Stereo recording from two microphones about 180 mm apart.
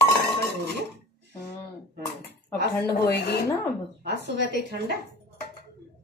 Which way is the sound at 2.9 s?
60° left (ahead or behind).